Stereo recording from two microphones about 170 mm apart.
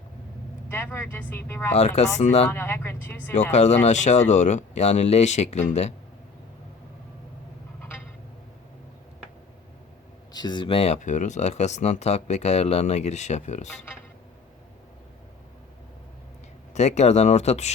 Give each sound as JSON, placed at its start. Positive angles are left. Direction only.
{"t": 0.7, "sound": "speech", "side_deg": 15}
{"t": 1.7, "sound": "speech", "side_deg": 40}
{"t": 2.5, "sound": "speech", "side_deg": 15}
{"t": 3.5, "sound": "speech", "side_deg": 40}
{"t": 7.8, "sound": "a sound", "side_deg": 10}
{"t": 10.3, "sound": "speech", "side_deg": 25}
{"t": 16.7, "sound": "speech", "side_deg": 40}